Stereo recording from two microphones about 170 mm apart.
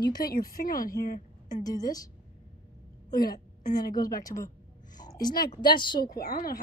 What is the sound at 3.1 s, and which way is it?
A woman's voice, 25° left (ahead or behind).